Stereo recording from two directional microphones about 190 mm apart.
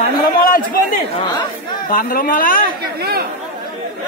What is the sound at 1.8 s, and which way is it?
Speech, 50° left (ahead or behind).